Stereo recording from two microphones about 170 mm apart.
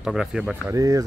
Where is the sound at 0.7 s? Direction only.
20° right (ahead or behind).